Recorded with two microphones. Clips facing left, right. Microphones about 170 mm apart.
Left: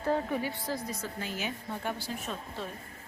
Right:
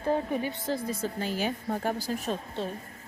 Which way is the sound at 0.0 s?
15° right (ahead or behind).